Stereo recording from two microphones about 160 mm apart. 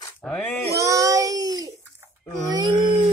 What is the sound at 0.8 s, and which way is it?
Speech, 20° right (ahead or behind).